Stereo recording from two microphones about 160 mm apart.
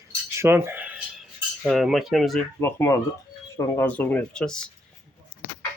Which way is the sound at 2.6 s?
15° left (ahead or behind).